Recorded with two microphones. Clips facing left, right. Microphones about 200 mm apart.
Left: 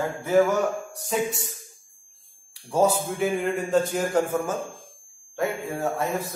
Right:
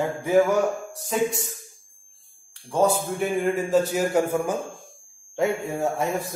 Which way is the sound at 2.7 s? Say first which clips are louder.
Even; 5° left (ahead or behind).